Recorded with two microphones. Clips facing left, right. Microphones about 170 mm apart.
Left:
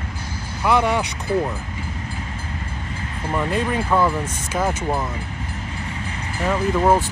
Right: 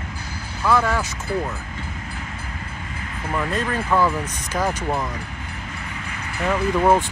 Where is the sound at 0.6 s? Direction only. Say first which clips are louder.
Left 1 dB; 20° left (ahead or behind).